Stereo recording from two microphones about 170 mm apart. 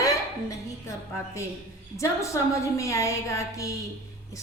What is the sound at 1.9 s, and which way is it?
A woman's voice, 15° left (ahead or behind).